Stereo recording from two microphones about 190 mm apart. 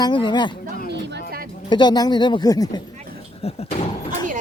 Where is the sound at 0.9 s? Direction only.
60° right (ahead or behind).